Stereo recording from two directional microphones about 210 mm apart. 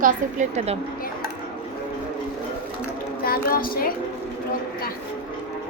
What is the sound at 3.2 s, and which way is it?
Speech, 45° left (ahead or behind).